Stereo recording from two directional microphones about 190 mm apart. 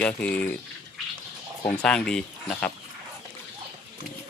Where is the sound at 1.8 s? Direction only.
5° left (ahead or behind).